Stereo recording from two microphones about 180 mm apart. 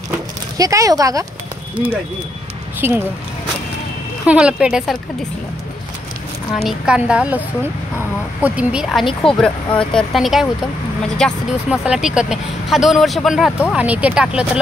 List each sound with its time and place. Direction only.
0.6 s speech: 20° right (ahead or behind)
2.8 s speech: 10° right (ahead or behind)
4.3 s speech: 5° right (ahead or behind)
6.5 s speech: centre (ahead or behind)
8.4 s speech: 10° right (ahead or behind)